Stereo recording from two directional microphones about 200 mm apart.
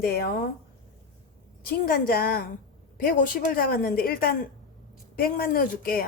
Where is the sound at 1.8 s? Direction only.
50° left (ahead or behind).